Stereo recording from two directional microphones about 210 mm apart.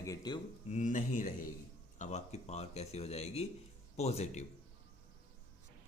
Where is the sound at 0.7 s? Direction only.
35° left (ahead or behind).